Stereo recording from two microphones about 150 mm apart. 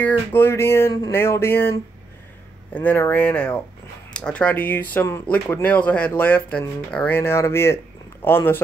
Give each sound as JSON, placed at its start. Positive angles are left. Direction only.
{"t": 0.0, "sound": "speech", "side_deg": 15}